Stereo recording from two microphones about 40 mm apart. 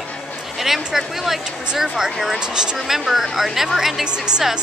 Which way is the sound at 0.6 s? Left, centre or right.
Centre.